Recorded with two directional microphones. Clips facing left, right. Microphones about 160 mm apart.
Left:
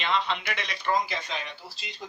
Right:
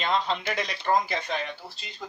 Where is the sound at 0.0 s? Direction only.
40° right (ahead or behind).